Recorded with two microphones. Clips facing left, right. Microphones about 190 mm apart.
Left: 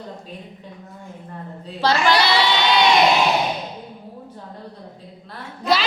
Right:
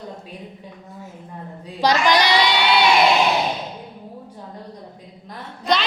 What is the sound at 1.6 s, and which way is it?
Child singing, 15° right (ahead or behind).